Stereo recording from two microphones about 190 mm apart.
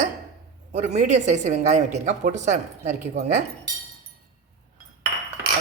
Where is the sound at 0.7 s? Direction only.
40° right (ahead or behind).